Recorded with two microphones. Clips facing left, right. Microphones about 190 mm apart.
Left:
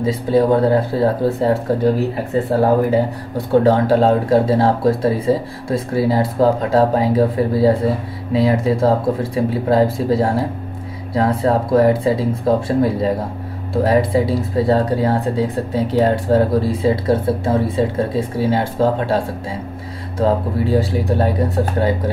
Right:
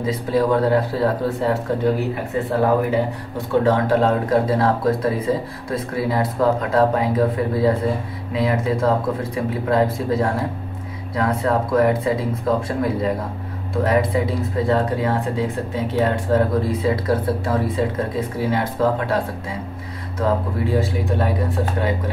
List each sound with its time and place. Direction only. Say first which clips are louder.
0.0 s speech: left 4 dB; 30° left (ahead or behind)